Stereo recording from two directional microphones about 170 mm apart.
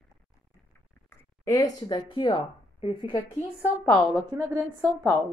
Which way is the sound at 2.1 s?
30° left (ahead or behind).